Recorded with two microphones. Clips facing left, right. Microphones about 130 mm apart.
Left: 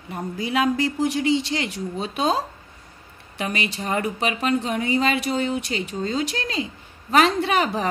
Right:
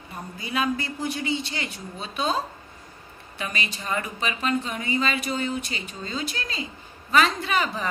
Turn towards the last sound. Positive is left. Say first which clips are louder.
# left 5 dB
turn(degrees=65)  # may be behind; listen again after turning